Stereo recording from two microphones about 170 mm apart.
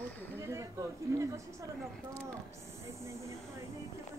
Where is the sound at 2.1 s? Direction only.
10° left (ahead or behind).